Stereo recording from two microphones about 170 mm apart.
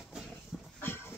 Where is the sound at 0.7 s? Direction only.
10° left (ahead or behind).